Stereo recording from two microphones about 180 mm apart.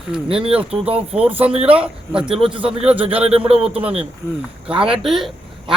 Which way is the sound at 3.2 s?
35° right (ahead or behind).